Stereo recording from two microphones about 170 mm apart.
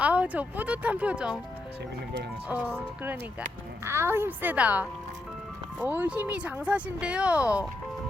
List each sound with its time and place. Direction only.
0.0 s speech: 10° right (ahead or behind)
2.5 s speech: 10° right (ahead or behind)